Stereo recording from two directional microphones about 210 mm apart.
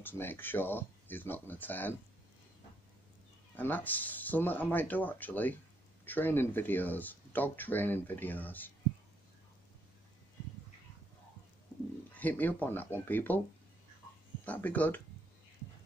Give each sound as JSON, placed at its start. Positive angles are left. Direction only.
{"t": 0.0, "sound": "speech", "side_deg": 10}
{"t": 3.5, "sound": "speech", "side_deg": 10}
{"t": 12.2, "sound": "speech", "side_deg": 10}
{"t": 14.4, "sound": "speech", "side_deg": 5}